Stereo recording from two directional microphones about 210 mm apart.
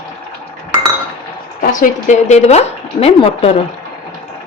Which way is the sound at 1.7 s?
35° left (ahead or behind).